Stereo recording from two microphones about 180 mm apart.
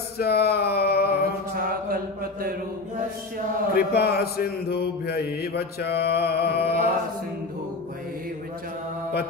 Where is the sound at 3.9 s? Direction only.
60° left (ahead or behind).